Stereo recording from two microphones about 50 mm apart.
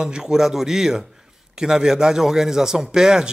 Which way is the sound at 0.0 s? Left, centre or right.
Centre.